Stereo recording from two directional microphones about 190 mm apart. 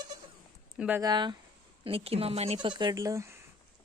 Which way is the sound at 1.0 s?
25° right (ahead or behind).